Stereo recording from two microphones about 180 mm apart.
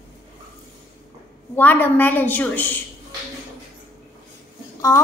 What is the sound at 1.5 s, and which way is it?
A woman's voice, 10° left (ahead or behind).